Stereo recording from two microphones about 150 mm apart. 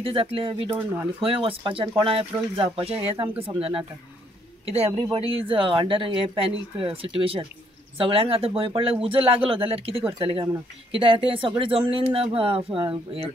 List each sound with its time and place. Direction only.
0.0 s speech: 40° right (ahead or behind)
4.6 s speech: 40° right (ahead or behind)